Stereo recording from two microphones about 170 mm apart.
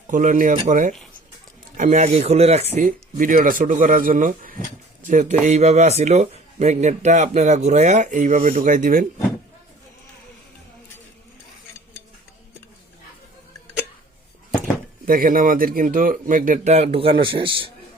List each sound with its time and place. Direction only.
0.1 s speech: 50° right (ahead or behind)
2.7 s speech: 50° right (ahead or behind)
15.0 s speech: 55° right (ahead or behind); by 17.7 s 30° right (ahead or behind)